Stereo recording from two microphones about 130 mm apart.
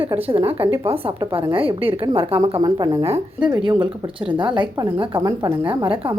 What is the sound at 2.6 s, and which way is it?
Speech, 35° right (ahead or behind).